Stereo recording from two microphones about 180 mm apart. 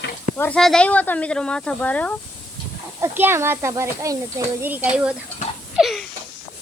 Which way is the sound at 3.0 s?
15° right (ahead or behind).